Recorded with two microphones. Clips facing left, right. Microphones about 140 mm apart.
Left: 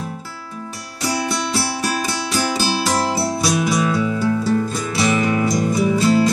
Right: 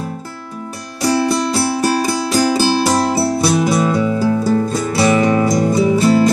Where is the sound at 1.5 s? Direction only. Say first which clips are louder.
Right 6 dB; 40° right (ahead or behind).